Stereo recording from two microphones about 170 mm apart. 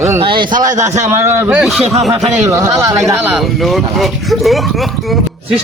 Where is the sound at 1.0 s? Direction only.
15° right (ahead or behind).